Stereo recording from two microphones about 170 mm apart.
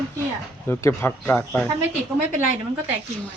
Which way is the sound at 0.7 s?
15° left (ahead or behind).